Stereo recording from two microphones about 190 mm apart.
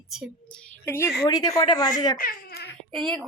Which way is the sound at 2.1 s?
50° left (ahead or behind).